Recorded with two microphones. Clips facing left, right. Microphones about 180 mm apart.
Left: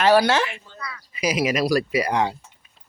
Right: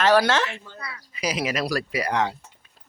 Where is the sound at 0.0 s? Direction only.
10° left (ahead or behind).